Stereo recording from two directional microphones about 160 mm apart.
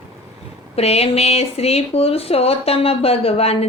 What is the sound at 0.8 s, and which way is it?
Speech, 40° left (ahead or behind).